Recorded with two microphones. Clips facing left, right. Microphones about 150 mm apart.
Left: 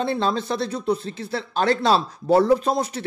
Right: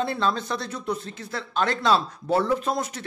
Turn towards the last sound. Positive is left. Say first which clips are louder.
# left 5 dB
turn(degrees=30)  # may be behind; listen again after turning